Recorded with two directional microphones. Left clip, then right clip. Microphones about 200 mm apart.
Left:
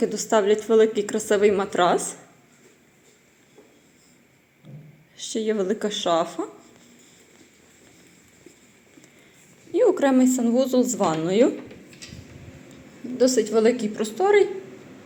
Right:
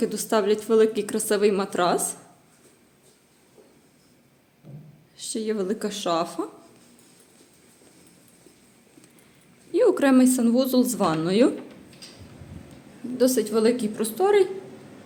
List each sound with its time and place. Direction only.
0.0 s a woman's voice: 10° right (ahead or behind)
5.1 s a woman's voice: 10° right (ahead or behind)
9.7 s a woman's voice: 20° right (ahead or behind)
13.1 s a woman's voice: 15° right (ahead or behind)